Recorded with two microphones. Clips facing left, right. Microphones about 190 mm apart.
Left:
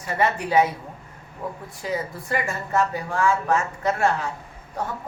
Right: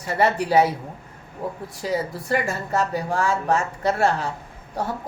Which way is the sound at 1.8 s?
35° right (ahead or behind).